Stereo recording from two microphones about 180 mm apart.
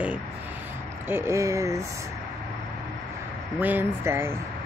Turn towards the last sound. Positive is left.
turn(degrees=-15)  # may be behind; listen again after turning